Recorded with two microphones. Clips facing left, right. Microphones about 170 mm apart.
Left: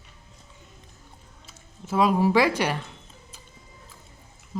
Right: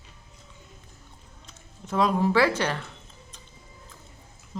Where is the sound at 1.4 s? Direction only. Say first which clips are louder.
Left 3 dB; 5° left (ahead or behind).